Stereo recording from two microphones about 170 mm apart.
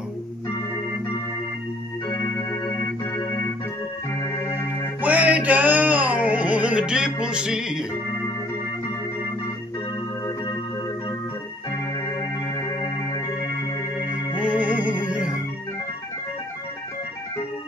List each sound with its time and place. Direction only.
2.7 s organ: 15° left (ahead or behind)
5.0 s music: 10° right (ahead or behind)
14.4 s music: 10° right (ahead or behind)